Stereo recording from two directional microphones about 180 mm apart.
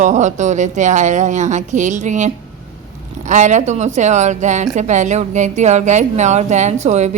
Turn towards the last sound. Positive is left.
turn(degrees=-40)  # may be behind; listen again after turning